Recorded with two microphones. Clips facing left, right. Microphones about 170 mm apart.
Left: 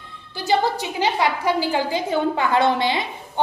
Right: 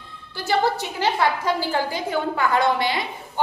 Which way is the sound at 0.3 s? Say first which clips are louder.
Left 1 dB; 15° left (ahead or behind).